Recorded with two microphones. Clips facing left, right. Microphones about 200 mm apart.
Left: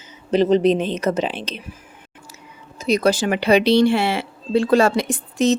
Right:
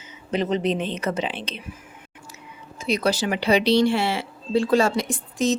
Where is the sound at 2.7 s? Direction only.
45° left (ahead or behind).